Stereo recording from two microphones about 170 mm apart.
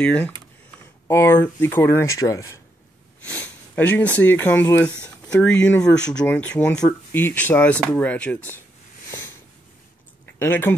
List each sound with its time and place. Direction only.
0.0 s speech: 5° left (ahead or behind)
6.8 s speech: 20° left (ahead or behind)
10.4 s speech: 10° left (ahead or behind)